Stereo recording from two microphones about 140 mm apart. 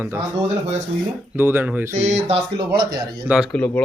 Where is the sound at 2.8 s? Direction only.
30° right (ahead or behind).